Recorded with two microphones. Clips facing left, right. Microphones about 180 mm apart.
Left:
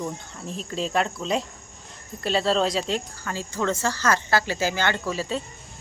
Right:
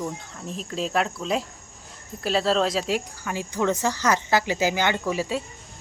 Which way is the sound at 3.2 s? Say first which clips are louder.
Right 3 dB; 15° right (ahead or behind).